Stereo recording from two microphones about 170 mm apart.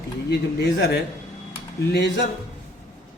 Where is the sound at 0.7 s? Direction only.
75° left (ahead or behind).